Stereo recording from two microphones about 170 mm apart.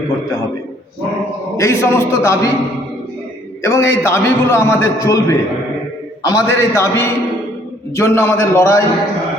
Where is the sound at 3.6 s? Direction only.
15° left (ahead or behind).